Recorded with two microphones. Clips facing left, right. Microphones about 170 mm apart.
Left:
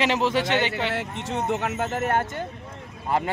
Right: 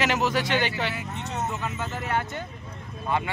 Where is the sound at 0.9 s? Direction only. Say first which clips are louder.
Left 4 dB; 85° left.